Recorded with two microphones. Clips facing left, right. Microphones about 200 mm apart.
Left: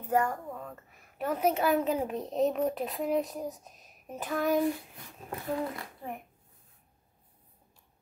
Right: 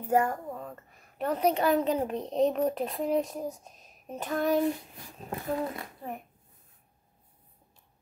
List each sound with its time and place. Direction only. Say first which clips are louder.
0.1 s a child's voice: right 2 dB; 10° right (ahead or behind)
1.1 s a child's voice: right 2 dB; 5° left (ahead or behind)
5.6 s a child's voice: right 1 dB; 20° right (ahead or behind)